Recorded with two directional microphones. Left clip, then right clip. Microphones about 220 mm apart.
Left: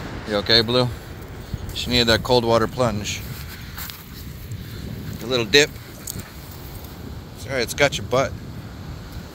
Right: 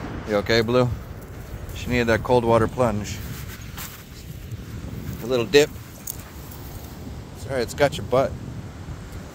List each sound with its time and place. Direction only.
0.3 s speech: 20° right (ahead or behind)
1.9 s speech: 5° right (ahead or behind)
5.3 s speech: 15° right (ahead or behind)
7.4 s speech: 10° right (ahead or behind)